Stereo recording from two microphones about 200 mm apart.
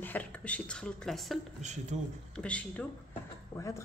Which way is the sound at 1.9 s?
35° right (ahead or behind).